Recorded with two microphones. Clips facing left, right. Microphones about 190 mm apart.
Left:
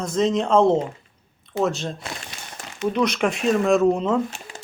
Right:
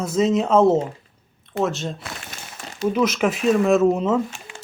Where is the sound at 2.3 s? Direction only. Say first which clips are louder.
Right 1 dB; 45° right (ahead or behind).